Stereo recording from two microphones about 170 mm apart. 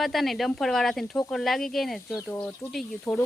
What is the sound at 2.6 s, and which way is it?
Speech, 15° left (ahead or behind).